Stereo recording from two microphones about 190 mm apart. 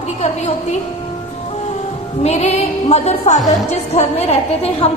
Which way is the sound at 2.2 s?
35° left (ahead or behind).